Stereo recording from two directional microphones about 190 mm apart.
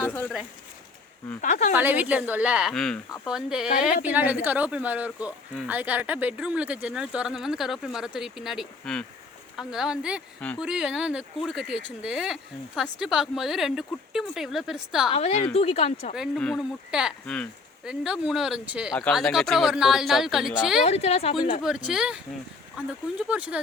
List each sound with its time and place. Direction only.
0.1 s a sound: 10° left (ahead or behind)
1.4 s speech: 45° left (ahead or behind)
1.7 s a woman's voice: 10° right (ahead or behind)
10.4 s speech: 5° left (ahead or behind)
15.1 s speech: 35° left (ahead or behind)
16.1 s speech: centre (ahead or behind)
20.8 s speech: 35° left (ahead or behind)
21.6 s speech: 5° right (ahead or behind)